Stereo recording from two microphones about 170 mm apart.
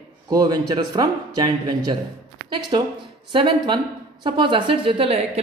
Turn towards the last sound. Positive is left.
turn(degrees=-35)  # may be behind; listen again after turning